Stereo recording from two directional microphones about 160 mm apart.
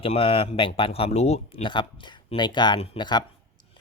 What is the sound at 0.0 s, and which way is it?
Speech, 35° left (ahead or behind).